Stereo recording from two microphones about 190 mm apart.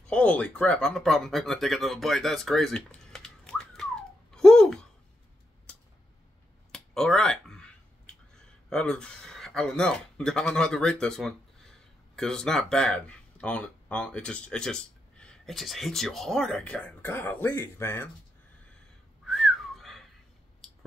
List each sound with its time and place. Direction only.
0.0 s speech: 5° left (ahead or behind)
6.7 s a sound: centre (ahead or behind)
8.6 s speech: 5° left (ahead or behind)
19.2 s whistling: centre (ahead or behind)